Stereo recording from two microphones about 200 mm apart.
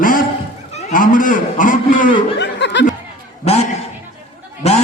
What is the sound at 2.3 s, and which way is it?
Laughter, 60° left (ahead or behind).